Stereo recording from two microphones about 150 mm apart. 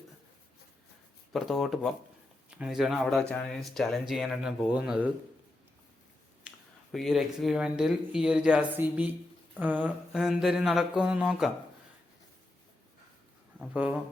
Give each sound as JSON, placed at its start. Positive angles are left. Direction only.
{"t": 1.3, "sound": "a man's voice", "side_deg": 0}
{"t": 6.9, "sound": "speech", "side_deg": 0}
{"t": 13.6, "sound": "a man's voice", "side_deg": -10}